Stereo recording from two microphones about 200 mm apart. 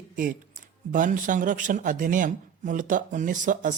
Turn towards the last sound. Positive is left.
turn(degrees=-40)  # may be behind; listen again after turning